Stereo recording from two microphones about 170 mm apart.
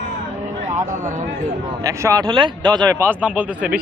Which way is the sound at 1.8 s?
20° right (ahead or behind).